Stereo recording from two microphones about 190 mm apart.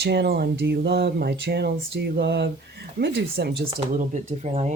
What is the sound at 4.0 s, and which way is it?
Speech, 40° right (ahead or behind).